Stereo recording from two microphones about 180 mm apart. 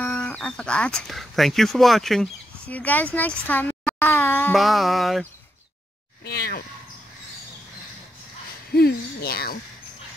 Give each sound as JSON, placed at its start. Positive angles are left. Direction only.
{"t": 0.0, "sound": "a child's voice", "side_deg": 5}
{"t": 4.6, "sound": "music", "side_deg": 0}
{"t": 6.2, "sound": "speech", "side_deg": 60}
{"t": 8.7, "sound": "speech", "side_deg": 60}